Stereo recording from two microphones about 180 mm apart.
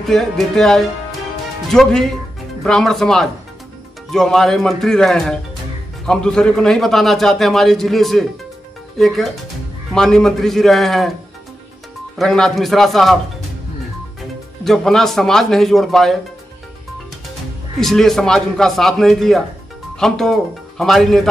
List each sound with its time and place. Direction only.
0.1 s a man's voice: centre (ahead or behind)
12.2 s a man's voice: centre (ahead or behind)
14.6 s a man's voice: centre (ahead or behind)
17.7 s a man's voice: centre (ahead or behind)